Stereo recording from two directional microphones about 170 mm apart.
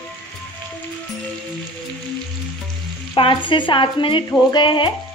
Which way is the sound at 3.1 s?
30° left (ahead or behind).